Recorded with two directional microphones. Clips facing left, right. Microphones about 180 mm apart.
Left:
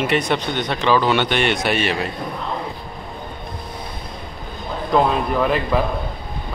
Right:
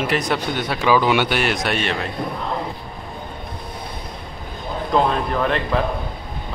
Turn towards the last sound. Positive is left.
turn(degrees=5)  # may be behind; listen again after turning